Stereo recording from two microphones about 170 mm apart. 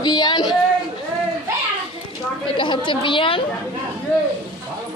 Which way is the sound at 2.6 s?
30° left (ahead or behind).